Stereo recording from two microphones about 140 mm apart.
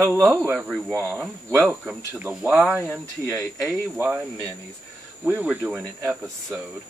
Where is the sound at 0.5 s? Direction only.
Centre (ahead or behind).